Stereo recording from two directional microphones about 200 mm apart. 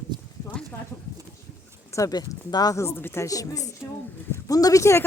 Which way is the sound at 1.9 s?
20° left (ahead or behind).